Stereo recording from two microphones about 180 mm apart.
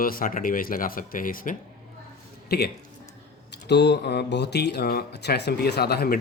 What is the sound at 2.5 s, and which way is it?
Speech, 65° left (ahead or behind).